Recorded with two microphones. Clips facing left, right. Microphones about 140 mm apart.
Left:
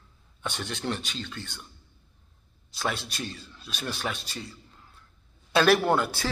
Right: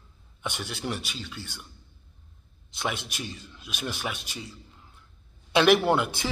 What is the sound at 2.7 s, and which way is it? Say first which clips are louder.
A man's voice: left 1 dB; 20° right (ahead or behind).